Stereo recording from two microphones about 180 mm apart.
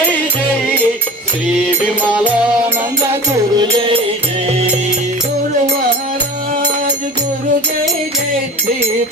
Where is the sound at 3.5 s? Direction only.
30° right (ahead or behind).